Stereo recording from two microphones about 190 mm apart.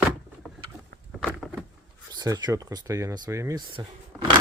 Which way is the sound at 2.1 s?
20° right (ahead or behind).